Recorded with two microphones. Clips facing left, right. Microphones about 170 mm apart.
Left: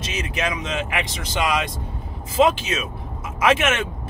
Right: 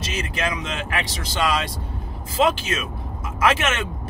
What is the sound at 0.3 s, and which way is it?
A man's voice, 20° left (ahead or behind).